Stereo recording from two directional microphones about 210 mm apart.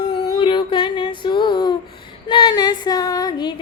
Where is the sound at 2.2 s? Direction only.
20° left (ahead or behind).